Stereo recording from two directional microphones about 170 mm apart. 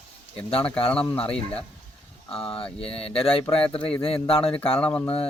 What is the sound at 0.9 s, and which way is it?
Speech, 5° left (ahead or behind).